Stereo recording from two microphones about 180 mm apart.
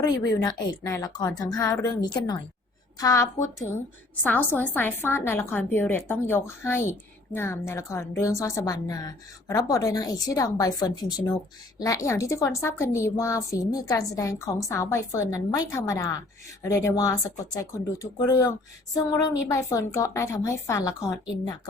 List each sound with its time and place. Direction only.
0.0 s a woman's voice: 20° left (ahead or behind)